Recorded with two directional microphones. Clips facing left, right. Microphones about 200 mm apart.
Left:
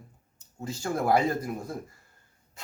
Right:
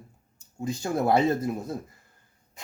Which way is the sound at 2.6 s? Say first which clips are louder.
Right 2 dB; 15° right (ahead or behind).